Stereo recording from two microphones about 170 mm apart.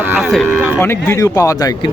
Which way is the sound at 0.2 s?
Centre (ahead or behind).